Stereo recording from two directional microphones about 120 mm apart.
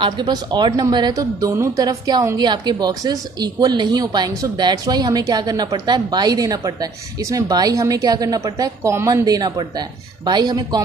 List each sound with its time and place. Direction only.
0.0 s speech: 40° right (ahead or behind)